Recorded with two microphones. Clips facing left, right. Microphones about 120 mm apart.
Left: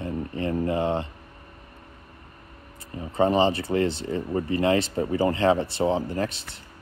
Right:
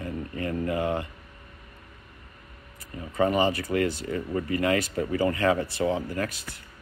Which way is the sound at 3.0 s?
25° left (ahead or behind).